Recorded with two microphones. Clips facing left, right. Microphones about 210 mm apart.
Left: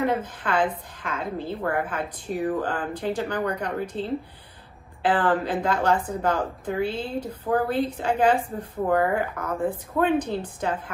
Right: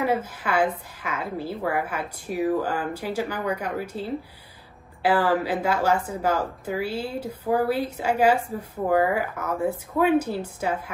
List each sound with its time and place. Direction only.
0.0 s speech: 5° right (ahead or behind)